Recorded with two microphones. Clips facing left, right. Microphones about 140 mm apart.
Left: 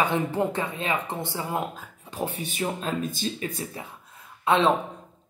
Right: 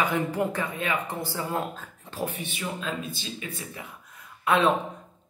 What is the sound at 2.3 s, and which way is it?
Speech, 40° left (ahead or behind).